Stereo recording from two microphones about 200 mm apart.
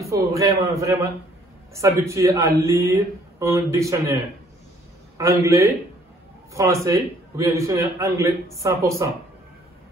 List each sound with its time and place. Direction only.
0.0 s a man's voice: 15° right (ahead or behind)
5.4 s a man's voice: 15° right (ahead or behind)